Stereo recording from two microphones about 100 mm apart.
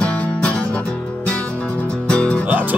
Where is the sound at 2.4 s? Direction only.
15° right (ahead or behind).